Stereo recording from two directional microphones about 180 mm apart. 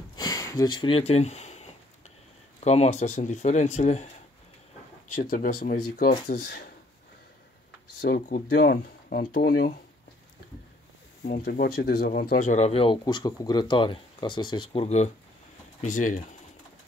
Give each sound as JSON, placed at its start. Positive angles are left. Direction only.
{"t": 0.1, "sound": "a sound", "side_deg": 20}
{"t": 2.6, "sound": "speech", "side_deg": 35}
{"t": 5.2, "sound": "speech", "side_deg": 55}
{"t": 8.0, "sound": "speech", "side_deg": 55}
{"t": 11.2, "sound": "speech", "side_deg": 55}